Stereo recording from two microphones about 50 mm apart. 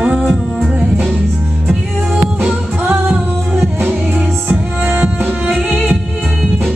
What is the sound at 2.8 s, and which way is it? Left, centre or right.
Music, right.